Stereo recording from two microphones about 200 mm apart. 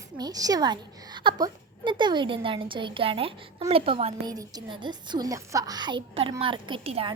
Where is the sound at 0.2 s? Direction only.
20° right (ahead or behind).